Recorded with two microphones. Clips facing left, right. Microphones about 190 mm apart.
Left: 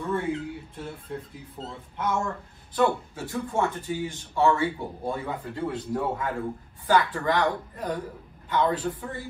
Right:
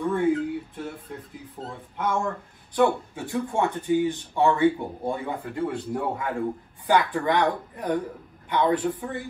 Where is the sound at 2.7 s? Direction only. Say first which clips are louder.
Right 2 dB; 20° right (ahead or behind).